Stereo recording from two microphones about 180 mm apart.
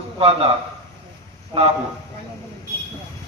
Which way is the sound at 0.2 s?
35° right (ahead or behind).